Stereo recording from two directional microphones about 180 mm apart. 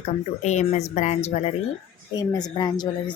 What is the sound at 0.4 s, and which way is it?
A woman's voice, 40° left (ahead or behind).